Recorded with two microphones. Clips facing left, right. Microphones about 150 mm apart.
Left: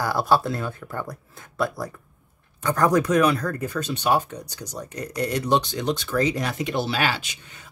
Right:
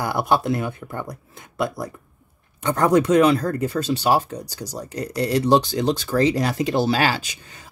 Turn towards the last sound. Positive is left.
turn(degrees=-35)  # may be behind; listen again after turning